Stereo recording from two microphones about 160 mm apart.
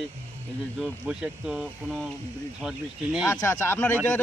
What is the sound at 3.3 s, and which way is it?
Speech, 15° left (ahead or behind).